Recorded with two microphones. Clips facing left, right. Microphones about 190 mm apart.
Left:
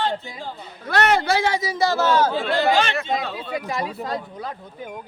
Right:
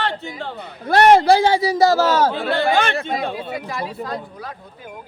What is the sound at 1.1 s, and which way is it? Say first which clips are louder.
A man's voice: right 7 dB; 30° right (ahead or behind).